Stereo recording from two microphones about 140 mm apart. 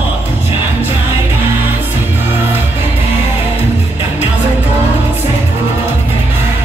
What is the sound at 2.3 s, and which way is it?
Music, 15° right (ahead or behind).